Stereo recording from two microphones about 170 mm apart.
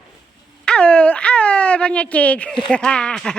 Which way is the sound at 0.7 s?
5° left (ahead or behind).